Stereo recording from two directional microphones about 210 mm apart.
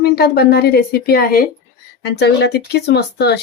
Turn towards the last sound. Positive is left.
turn(degrees=50)  # may be behind; listen again after turning